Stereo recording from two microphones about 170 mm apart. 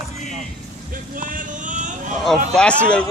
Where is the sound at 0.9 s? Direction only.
50° right (ahead or behind).